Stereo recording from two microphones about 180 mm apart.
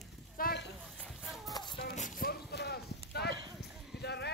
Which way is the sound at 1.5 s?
25° left (ahead or behind).